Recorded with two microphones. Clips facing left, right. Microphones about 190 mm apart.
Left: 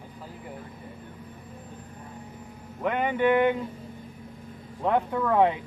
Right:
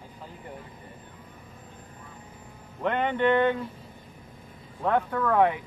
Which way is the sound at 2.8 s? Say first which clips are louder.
Even; 5° left (ahead or behind).